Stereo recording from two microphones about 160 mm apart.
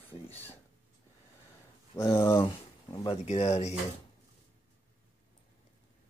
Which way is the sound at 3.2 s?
40° left (ahead or behind).